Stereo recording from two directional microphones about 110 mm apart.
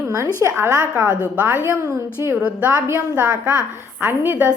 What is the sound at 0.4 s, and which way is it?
A woman's voice, 25° right (ahead or behind).